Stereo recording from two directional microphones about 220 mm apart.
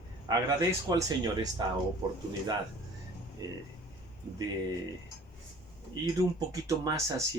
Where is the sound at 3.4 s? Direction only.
15° right (ahead or behind).